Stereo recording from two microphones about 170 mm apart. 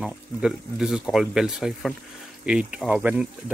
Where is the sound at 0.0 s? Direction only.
Centre (ahead or behind).